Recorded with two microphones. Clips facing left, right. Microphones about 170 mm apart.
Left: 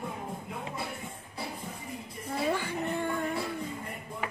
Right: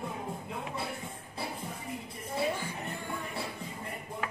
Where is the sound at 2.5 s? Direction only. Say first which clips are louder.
Left 6 dB; 70° left (ahead or behind).